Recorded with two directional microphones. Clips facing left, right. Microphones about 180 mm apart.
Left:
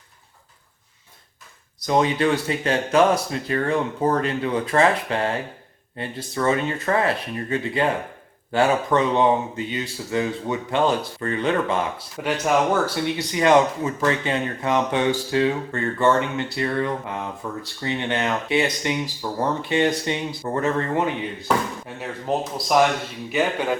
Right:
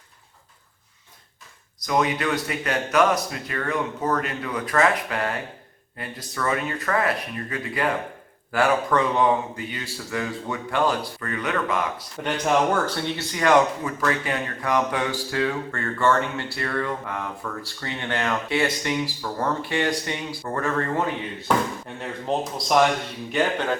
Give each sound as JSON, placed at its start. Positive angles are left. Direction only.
{"t": 1.9, "sound": "speech", "side_deg": 30}
{"t": 12.2, "sound": "speech", "side_deg": 5}
{"t": 13.1, "sound": "speech", "side_deg": 20}
{"t": 21.4, "sound": "speech", "side_deg": 5}